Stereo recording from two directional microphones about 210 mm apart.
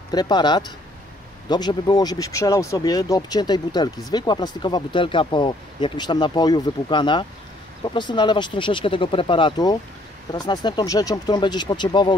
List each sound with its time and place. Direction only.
0.1 s speech: 20° left (ahead or behind)